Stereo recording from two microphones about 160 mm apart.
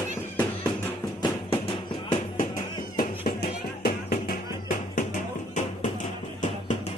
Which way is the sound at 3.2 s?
70° left (ahead or behind).